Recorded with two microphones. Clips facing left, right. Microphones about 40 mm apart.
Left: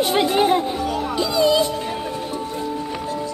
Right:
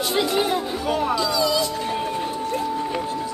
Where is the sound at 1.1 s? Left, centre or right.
Left.